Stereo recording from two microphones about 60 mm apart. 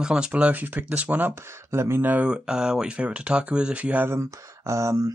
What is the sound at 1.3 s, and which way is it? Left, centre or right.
Speech, right.